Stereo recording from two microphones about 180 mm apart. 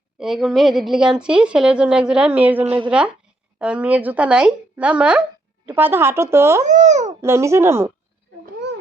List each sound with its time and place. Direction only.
0.2 s a woman's voice: centre (ahead or behind)
2.6 s a woman's voice: 30° right (ahead or behind)
3.6 s speech: 5° right (ahead or behind)
6.7 s a child's voice: 40° right (ahead or behind)
7.2 s speech: 15° right (ahead or behind)